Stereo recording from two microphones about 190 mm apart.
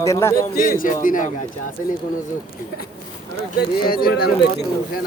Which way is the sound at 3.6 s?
50° left (ahead or behind).